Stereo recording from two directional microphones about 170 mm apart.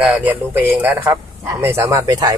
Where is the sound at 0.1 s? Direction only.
10° right (ahead or behind).